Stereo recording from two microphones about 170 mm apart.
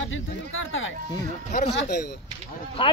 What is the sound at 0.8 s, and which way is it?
Speech, 80° left.